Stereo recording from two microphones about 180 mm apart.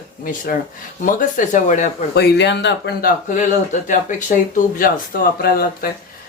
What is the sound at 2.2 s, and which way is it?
Speech, 70° left (ahead or behind).